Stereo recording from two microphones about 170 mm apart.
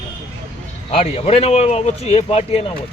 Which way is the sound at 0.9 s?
35° left (ahead or behind).